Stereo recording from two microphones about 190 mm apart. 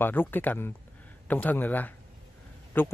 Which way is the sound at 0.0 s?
10° left (ahead or behind).